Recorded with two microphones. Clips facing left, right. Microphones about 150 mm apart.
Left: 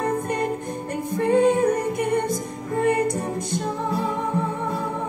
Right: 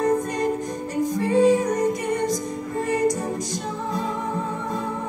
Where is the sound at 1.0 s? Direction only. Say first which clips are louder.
Even; 60° left (ahead or behind).